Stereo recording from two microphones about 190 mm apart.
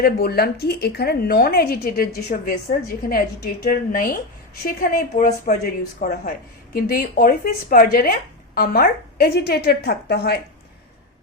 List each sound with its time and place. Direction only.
0.0 s a woman's voice: 55° left (ahead or behind)